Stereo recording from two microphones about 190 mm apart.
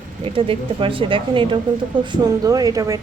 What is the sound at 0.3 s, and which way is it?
Speech, 30° right (ahead or behind).